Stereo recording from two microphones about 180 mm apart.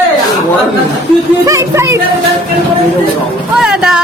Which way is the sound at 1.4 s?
15° right (ahead or behind).